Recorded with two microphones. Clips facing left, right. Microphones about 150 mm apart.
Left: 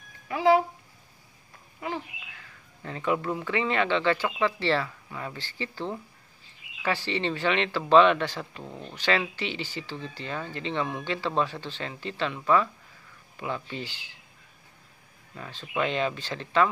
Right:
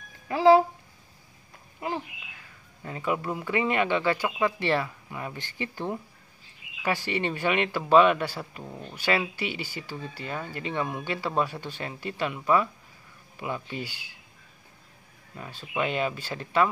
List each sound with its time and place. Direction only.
0.3 s speech: 30° right (ahead or behind)
2.8 s speech: 10° right (ahead or behind)
15.3 s speech: 10° right (ahead or behind)